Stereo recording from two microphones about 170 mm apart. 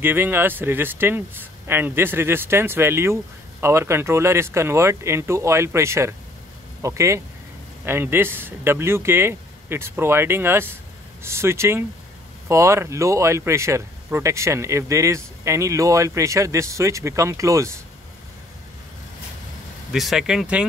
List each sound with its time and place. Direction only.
0.0 s speech: 10° right (ahead or behind)
19.9 s speech: centre (ahead or behind)